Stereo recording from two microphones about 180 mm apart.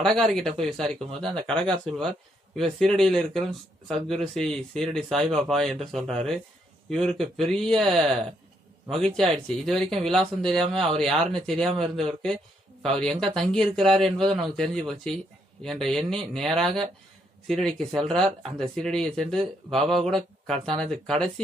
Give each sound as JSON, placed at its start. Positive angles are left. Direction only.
{"t": 0.0, "sound": "speech", "side_deg": 5}
{"t": 12.8, "sound": "speech", "side_deg": 5}